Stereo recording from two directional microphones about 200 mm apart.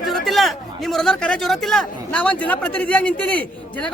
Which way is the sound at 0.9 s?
5° left (ahead or behind).